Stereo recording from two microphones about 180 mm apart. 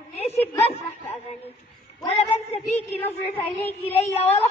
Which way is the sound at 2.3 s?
35° left (ahead or behind).